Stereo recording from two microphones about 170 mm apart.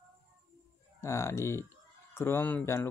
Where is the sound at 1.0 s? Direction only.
15° left (ahead or behind).